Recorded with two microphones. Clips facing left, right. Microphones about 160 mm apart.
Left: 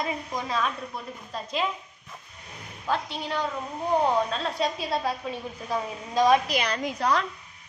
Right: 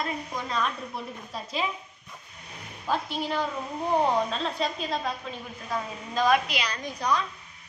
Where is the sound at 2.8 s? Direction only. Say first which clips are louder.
Even; 10° right (ahead or behind); by 6.4 s 15° left (ahead or behind).